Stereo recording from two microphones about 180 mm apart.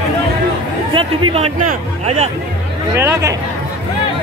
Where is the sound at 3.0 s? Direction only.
15° right (ahead or behind).